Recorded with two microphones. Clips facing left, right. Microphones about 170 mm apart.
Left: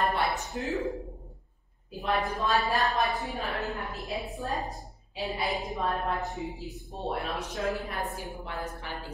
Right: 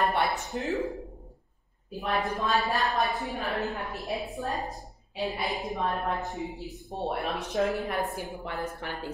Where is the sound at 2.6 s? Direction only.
Centre (ahead or behind).